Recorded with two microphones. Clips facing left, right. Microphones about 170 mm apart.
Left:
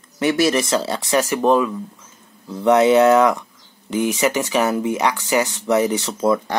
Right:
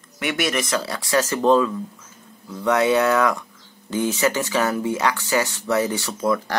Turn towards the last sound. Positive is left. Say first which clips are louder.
# left 3 dB
turn(degrees=25)  # may be behind; listen again after turning